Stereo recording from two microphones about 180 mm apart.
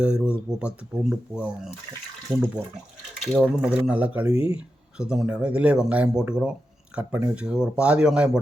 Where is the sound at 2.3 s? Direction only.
25° right (ahead or behind).